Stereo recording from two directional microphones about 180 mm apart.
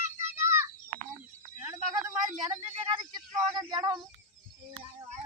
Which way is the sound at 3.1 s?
20° right (ahead or behind).